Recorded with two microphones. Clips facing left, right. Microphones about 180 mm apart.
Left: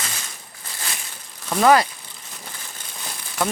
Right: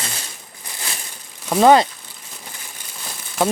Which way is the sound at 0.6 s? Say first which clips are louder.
Right 1 dB; 15° right (ahead or behind).